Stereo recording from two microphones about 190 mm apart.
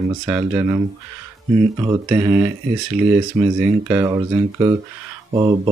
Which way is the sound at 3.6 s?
10° right (ahead or behind).